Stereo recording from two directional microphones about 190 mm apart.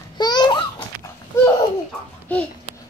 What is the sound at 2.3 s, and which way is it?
Speech, 5° left (ahead or behind).